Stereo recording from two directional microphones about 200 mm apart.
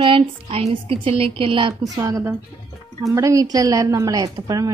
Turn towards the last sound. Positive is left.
turn(degrees=-15)  # may be behind; listen again after turning